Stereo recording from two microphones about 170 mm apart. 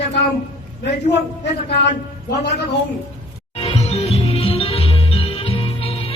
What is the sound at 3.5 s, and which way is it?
Music, 35° left (ahead or behind).